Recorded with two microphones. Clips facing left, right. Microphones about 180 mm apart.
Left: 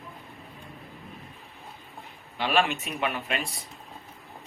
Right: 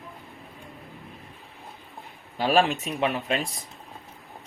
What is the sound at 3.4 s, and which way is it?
Speech, centre (ahead or behind).